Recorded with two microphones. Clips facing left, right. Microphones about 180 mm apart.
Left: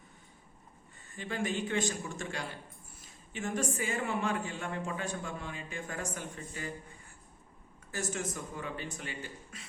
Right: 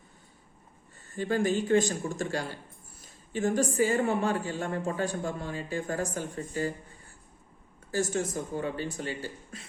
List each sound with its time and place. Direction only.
1.1 s a woman's voice: 40° right (ahead or behind)
7.9 s a woman's voice: 30° right (ahead or behind)